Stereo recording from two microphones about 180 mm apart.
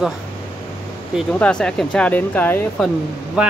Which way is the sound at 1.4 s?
5° left (ahead or behind).